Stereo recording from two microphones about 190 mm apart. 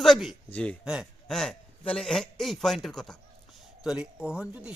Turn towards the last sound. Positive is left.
turn(degrees=-5)  # may be behind; listen again after turning